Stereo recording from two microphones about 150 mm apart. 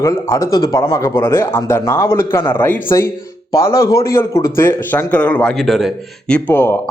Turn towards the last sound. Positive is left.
turn(degrees=15)  # may be behind; listen again after turning